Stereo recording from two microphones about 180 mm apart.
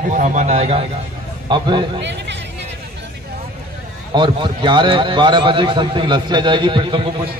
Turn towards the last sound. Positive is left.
turn(degrees=-30)  # may be behind; listen again after turning